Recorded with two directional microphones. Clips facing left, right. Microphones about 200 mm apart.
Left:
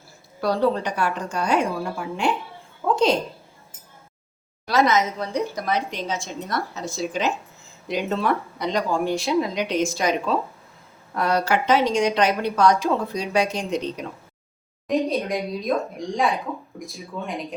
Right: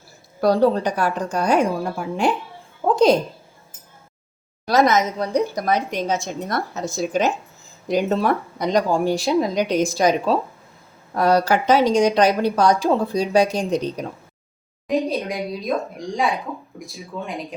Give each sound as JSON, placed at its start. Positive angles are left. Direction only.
{"t": 0.4, "sound": "a woman's voice", "side_deg": -40}
{"t": 2.9, "sound": "a sound", "side_deg": -40}
{"t": 4.6, "sound": "a woman's voice", "side_deg": -40}
{"t": 14.8, "sound": "speech", "side_deg": 0}